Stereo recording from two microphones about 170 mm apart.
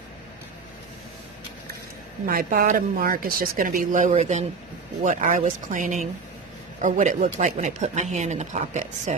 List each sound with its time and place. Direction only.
2.2 s speech: 60° right (ahead or behind); by 9.1 s 40° right (ahead or behind)